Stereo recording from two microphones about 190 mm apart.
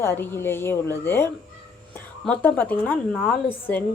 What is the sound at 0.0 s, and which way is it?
A woman's voice, 10° left (ahead or behind).